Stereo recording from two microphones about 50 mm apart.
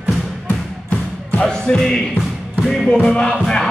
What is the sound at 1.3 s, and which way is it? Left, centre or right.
Music, left.